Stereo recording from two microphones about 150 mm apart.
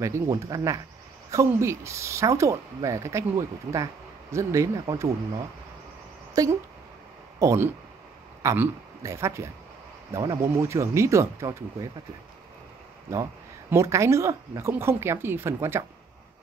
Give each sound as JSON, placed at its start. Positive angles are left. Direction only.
{"t": 0.0, "sound": "a man's voice", "side_deg": -20}
{"t": 13.1, "sound": "speech", "side_deg": -20}